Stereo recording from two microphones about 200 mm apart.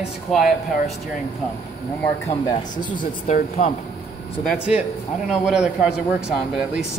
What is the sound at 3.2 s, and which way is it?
Speech, 40° left (ahead or behind).